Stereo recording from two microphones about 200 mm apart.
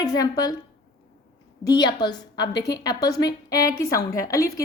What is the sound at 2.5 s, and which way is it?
Speech, 55° left (ahead or behind).